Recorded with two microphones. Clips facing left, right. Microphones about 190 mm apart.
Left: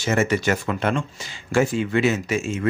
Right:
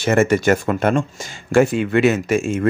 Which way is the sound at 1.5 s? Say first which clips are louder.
Right 5 dB; 60° right (ahead or behind).